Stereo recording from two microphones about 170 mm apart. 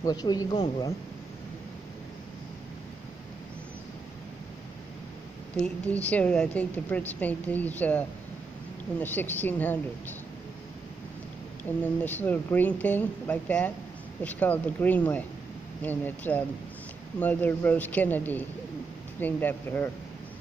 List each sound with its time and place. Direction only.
0.0 s speech: 25° left (ahead or behind)
6.0 s speech: 10° left (ahead or behind)
9.0 s speech: 10° left (ahead or behind)
11.8 s speech: 10° left (ahead or behind)